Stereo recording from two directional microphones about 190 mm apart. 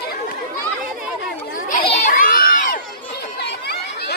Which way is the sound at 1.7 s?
45° left (ahead or behind).